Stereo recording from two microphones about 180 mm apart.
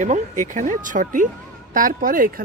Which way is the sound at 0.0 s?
45° right (ahead or behind).